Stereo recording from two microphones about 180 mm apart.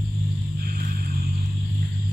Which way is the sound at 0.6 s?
55° right (ahead or behind).